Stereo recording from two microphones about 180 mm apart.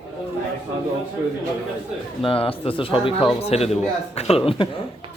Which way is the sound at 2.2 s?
30° left (ahead or behind).